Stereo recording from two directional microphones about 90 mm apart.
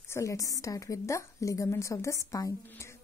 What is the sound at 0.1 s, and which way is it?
A woman's voice, 35° left (ahead or behind).